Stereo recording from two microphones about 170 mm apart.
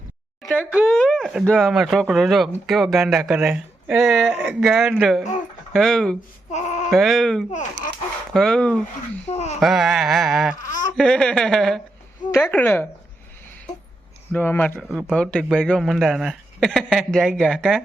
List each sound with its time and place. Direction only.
0.4 s a woman's voice: 10° left (ahead or behind)
6.5 s bleat: 40° left (ahead or behind)
6.9 s a man's voice: centre (ahead or behind)
9.2 s speech: 40° left (ahead or behind)
9.6 s a man's voice: centre (ahead or behind)
10.6 s a sound: 50° left (ahead or behind)
10.9 s a man's voice: 5° left (ahead or behind)
14.3 s a woman's voice: 10° left (ahead or behind)
14.8 s a man's voice: centre (ahead or behind)